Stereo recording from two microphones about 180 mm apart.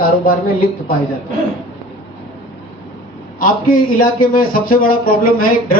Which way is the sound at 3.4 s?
50° left (ahead or behind).